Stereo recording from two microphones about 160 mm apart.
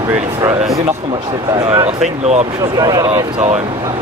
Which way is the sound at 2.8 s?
20° right (ahead or behind).